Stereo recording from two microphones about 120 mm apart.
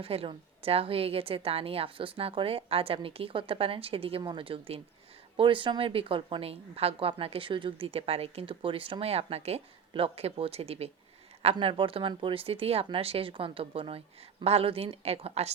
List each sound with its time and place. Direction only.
0.0 s a woman's voice: 55° right (ahead or behind)
11.6 s a woman's voice: 45° right (ahead or behind)